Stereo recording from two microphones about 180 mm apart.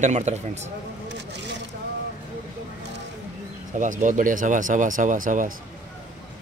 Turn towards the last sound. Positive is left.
turn(degrees=-50)  # may be behind; listen again after turning